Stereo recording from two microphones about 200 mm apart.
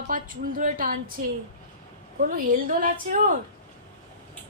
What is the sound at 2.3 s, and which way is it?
A woman's voice, 45° right (ahead or behind).